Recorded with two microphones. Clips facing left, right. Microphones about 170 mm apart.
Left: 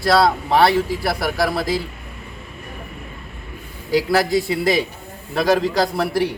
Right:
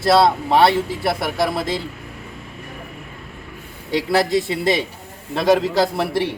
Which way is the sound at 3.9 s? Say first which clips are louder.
Left 1 dB; centre (ahead or behind).